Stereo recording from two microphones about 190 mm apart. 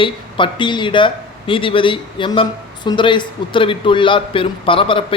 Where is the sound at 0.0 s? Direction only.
25° left (ahead or behind).